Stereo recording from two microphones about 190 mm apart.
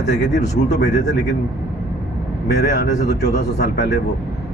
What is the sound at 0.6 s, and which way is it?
Speech, 65° left (ahead or behind).